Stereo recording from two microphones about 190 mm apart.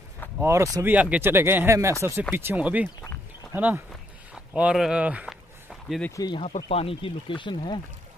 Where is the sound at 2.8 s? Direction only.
15° left (ahead or behind).